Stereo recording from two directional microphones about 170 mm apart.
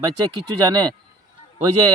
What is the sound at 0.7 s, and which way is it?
Speech, 25° right (ahead or behind).